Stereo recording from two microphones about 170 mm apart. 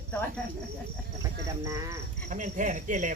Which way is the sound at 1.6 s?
15° right (ahead or behind).